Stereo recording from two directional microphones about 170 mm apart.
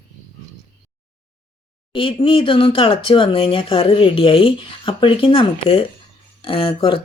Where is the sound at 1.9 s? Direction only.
30° left (ahead or behind).